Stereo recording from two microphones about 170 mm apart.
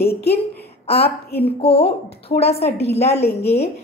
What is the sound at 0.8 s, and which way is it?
A woman's voice, 35° left (ahead or behind).